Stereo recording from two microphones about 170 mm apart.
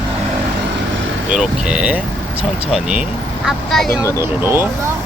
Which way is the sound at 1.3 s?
5° right (ahead or behind).